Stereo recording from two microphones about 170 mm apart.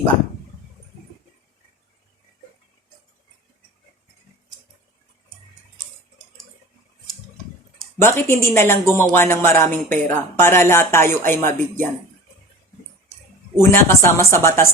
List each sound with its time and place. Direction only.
8.0 s speech: 15° left (ahead or behind)
13.6 s speech: 15° left (ahead or behind)